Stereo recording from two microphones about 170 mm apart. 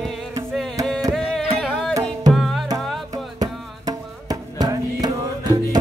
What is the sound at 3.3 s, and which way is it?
Music, 20° right (ahead or behind).